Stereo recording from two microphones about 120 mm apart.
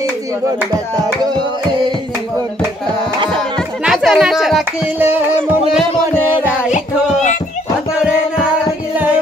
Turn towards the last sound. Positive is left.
turn(degrees=85)